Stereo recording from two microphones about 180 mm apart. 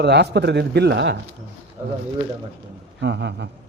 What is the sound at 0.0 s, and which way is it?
A man's voice, 70° right (ahead or behind).